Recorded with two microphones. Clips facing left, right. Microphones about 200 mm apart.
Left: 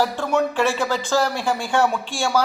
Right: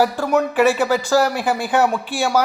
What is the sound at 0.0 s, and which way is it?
Speech, 5° right (ahead or behind).